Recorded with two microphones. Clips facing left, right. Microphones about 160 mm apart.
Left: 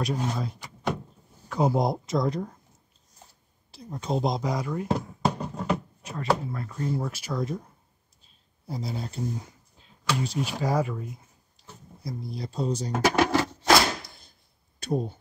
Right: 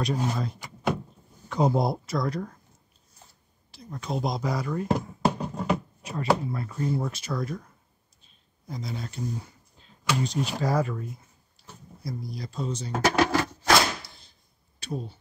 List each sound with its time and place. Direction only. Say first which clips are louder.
0.0 s speech: right 1 dB; centre (ahead or behind)
1.8 s speech: left 1 dB; 20° left (ahead or behind)
3.7 s speech: left 3 dB; 30° left (ahead or behind); by 4.8 s 10° left (ahead or behind)
4.8 s a sound: right 3 dB; 5° right (ahead or behind)
7.1 s speech: left 1 dB; 10° left (ahead or behind)
8.6 s speech: left 2 dB; 30° left (ahead or behind)
10.2 s speech: right 1 dB; 5° left (ahead or behind)
12.0 s speech: left 1 dB; 25° left (ahead or behind)
12.9 s a sound: even; 15° left (ahead or behind)
14.8 s speech: left 6 dB; 45° left (ahead or behind)